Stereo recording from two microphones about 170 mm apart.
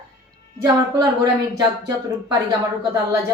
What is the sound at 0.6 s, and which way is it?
Speech, 20° right (ahead or behind).